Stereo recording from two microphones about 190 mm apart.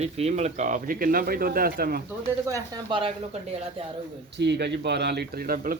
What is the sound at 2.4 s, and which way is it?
Speech, 25° right (ahead or behind).